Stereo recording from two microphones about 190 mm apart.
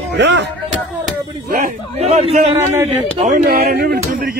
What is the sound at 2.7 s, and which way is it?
Speech, 35° right (ahead or behind).